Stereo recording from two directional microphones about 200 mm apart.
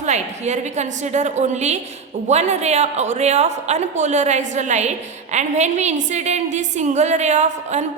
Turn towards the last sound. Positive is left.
turn(degrees=-35)  # may be behind; listen again after turning